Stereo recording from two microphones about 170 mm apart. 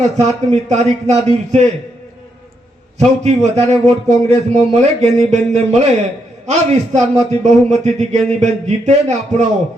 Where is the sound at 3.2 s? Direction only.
40° right (ahead or behind).